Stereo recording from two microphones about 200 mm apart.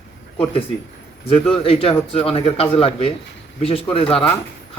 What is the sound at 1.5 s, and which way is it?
A man's voice, 30° left (ahead or behind).